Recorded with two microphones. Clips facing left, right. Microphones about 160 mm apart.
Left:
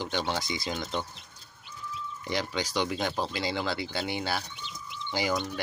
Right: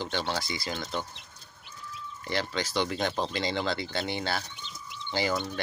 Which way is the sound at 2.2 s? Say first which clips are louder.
Even; 15° left (ahead or behind).